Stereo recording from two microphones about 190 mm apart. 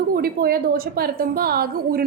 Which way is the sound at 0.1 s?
50° right (ahead or behind).